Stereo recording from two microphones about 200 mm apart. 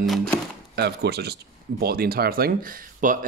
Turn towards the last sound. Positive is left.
turn(degrees=-45)  # may be behind; listen again after turning